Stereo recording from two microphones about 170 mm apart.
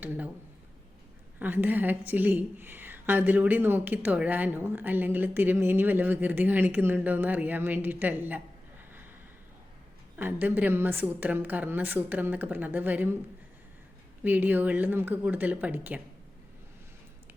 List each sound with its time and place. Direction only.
0.0 s speech: 10° right (ahead or behind)
1.4 s a woman's voice: 10° right (ahead or behind)
10.2 s a woman's voice: 10° right (ahead or behind)
14.3 s a woman's voice: 10° right (ahead or behind)